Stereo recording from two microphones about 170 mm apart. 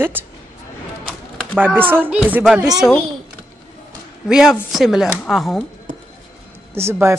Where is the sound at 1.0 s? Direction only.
5° left (ahead or behind).